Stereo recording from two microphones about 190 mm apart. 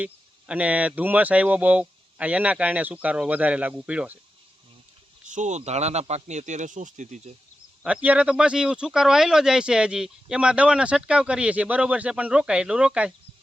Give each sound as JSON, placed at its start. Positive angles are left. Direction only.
{"t": 0.0, "sound": "speech", "side_deg": -5}
{"t": 5.2, "sound": "speech", "side_deg": -40}
{"t": 8.0, "sound": "speech", "side_deg": -5}